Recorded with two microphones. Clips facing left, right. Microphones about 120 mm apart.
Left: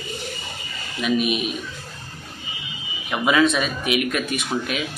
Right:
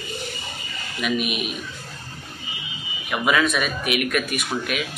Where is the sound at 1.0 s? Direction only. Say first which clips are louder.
Left 3 dB; 35° left (ahead or behind).